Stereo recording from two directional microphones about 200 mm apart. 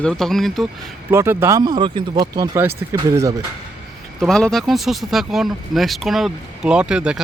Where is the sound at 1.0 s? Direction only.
10° right (ahead or behind).